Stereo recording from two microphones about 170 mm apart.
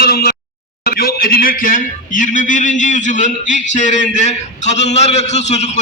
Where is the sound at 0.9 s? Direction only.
60° left (ahead or behind).